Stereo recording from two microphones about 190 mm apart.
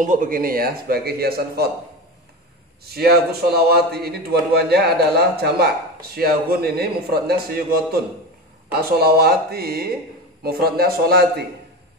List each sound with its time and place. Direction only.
0.0 s a man's voice: 45° right (ahead or behind)
2.8 s a man's voice: 55° right (ahead or behind)